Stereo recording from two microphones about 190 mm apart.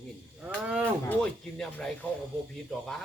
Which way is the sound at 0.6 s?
10° right (ahead or behind).